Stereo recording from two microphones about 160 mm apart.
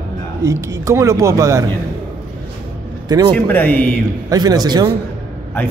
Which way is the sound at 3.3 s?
10° left (ahead or behind).